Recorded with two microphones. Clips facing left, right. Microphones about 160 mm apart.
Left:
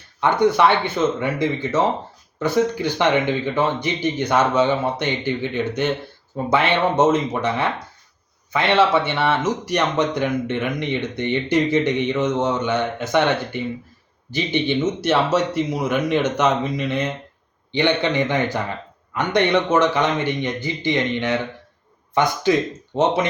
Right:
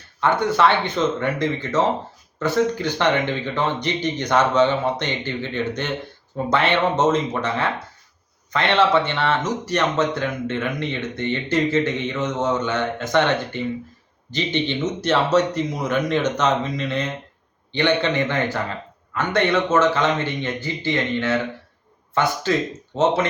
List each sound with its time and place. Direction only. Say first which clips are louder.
0.5 s speech: left 1 dB; 10° left (ahead or behind)